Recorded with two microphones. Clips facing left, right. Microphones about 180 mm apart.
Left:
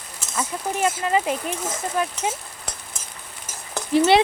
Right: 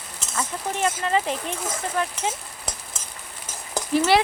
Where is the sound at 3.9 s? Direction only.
20° left (ahead or behind).